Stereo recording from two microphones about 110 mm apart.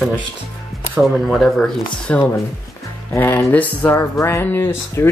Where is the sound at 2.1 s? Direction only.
15° left (ahead or behind).